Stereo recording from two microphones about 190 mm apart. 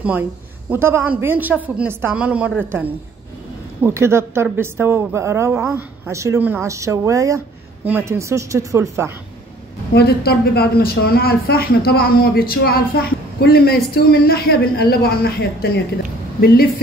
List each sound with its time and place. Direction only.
0.7 s a woman's voice: 10° right (ahead or behind)
3.8 s a woman's voice: 15° right (ahead or behind)
9.9 s a woman's voice: 55° left (ahead or behind)